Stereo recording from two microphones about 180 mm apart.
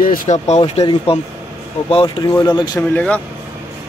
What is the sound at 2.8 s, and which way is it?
Speech, 5° left (ahead or behind).